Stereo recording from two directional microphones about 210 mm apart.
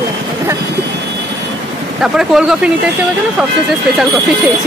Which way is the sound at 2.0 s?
5° right (ahead or behind).